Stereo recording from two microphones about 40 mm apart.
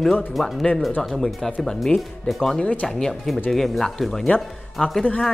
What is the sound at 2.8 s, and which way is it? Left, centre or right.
Speech, centre.